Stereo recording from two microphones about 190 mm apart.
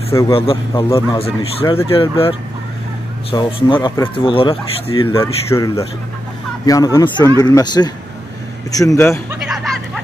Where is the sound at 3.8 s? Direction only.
15° left (ahead or behind).